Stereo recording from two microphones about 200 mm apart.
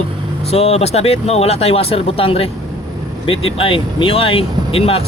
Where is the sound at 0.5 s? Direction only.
30° left (ahead or behind).